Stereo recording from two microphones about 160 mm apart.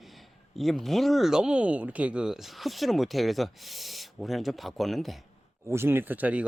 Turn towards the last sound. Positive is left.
turn(degrees=-10)  # may be behind; listen again after turning